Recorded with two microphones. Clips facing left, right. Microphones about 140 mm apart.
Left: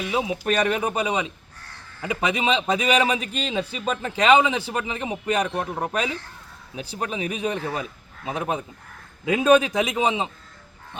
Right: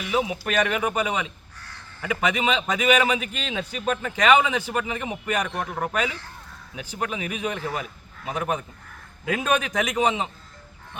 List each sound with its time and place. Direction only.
0.0 s a man's voice: 25° left (ahead or behind)